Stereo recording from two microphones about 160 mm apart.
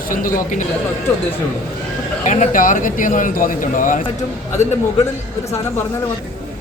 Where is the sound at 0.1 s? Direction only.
60° left (ahead or behind).